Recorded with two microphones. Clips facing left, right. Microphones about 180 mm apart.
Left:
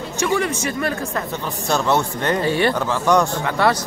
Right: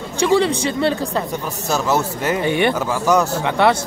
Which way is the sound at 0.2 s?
30° right (ahead or behind).